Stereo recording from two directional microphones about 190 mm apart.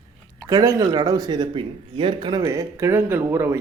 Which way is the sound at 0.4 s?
20° right (ahead or behind).